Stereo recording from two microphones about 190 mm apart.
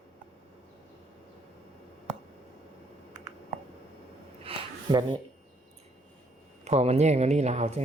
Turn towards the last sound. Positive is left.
turn(degrees=-35)  # may be behind; listen again after turning